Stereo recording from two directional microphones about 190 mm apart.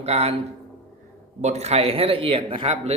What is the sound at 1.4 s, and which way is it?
A man's voice, 35° right (ahead or behind).